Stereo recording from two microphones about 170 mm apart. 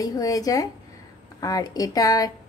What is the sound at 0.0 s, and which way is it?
Speech, 20° left (ahead or behind).